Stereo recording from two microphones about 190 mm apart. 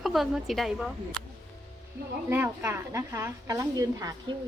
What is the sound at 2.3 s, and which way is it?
A woman's voice, 10° right (ahead or behind).